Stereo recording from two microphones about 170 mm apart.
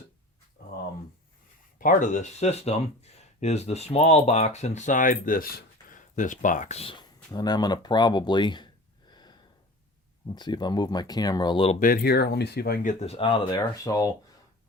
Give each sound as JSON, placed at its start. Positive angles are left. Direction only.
{"t": 1.8, "sound": "speech", "side_deg": 50}
{"t": 11.8, "sound": "speech", "side_deg": 60}